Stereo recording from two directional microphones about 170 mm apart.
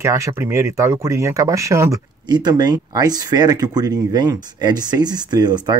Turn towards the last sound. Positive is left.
turn(degrees=-25)  # may be behind; listen again after turning